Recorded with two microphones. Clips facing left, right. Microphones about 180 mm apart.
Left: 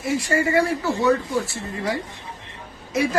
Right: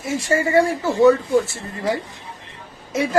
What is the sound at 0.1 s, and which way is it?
Speech, 25° right (ahead or behind).